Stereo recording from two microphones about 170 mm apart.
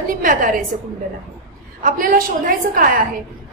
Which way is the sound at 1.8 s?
55° right (ahead or behind).